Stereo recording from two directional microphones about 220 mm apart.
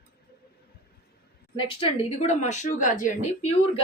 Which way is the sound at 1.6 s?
25° left (ahead or behind).